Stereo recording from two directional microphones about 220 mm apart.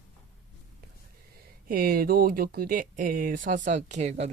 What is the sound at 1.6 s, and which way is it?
Speech, 40° right (ahead or behind).